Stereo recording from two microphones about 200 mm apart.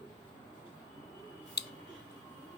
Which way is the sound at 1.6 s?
55° left (ahead or behind).